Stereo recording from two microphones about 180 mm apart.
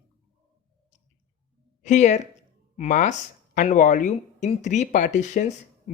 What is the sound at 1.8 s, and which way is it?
Speech, 40° left (ahead or behind).